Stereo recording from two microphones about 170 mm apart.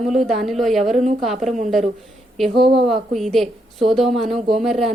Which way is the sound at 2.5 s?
30° right (ahead or behind).